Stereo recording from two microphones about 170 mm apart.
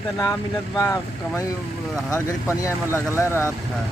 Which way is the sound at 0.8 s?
15° left (ahead or behind).